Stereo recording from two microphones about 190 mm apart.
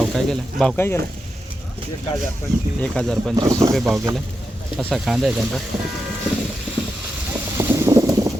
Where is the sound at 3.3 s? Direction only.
20° right (ahead or behind).